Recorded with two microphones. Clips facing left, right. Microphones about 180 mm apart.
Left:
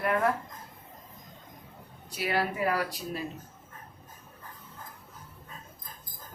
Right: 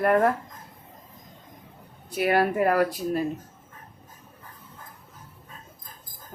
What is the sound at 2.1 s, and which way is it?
Speech, 55° right (ahead or behind).